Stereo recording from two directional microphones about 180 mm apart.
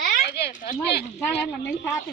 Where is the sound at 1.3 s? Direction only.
65° left (ahead or behind).